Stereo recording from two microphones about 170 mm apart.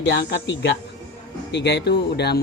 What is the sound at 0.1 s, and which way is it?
Speech, 85° left.